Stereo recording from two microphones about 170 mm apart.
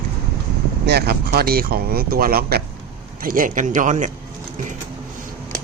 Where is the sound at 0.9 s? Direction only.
75° right (ahead or behind); by 4.1 s 50° right (ahead or behind).